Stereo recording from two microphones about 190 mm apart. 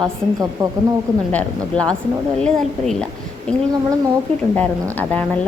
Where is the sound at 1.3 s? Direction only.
5° left (ahead or behind).